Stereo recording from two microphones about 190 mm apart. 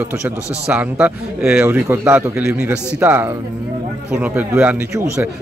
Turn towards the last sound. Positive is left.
turn(degrees=-10)  # may be behind; listen again after turning